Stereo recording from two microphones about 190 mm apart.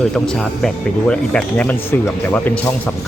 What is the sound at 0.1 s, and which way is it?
Speech, centre (ahead or behind).